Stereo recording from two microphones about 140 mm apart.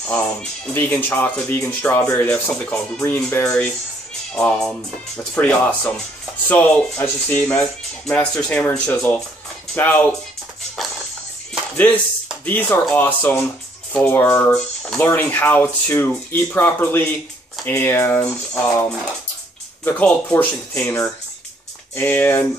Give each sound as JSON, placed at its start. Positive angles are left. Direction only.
{"t": 0.1, "sound": "speech", "side_deg": 10}
{"t": 4.3, "sound": "speech", "side_deg": 5}
{"t": 12.4, "sound": "speech", "side_deg": 15}